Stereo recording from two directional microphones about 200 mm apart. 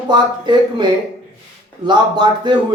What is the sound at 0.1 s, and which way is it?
Speech, 20° right (ahead or behind).